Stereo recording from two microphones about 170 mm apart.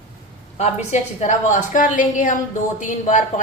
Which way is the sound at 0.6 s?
40° left (ahead or behind).